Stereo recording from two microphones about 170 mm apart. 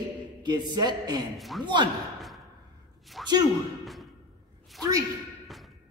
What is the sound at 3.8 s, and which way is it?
Music, centre (ahead or behind).